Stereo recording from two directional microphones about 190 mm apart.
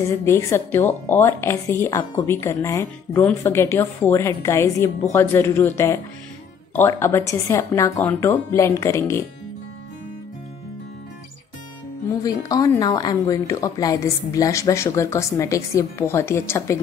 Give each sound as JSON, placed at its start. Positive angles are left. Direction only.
{"t": 0.0, "sound": "a woman's voice", "side_deg": 15}
{"t": 12.2, "sound": "a woman's voice", "side_deg": 20}